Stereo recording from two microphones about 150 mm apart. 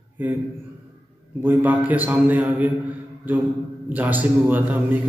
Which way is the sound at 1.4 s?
10° right (ahead or behind).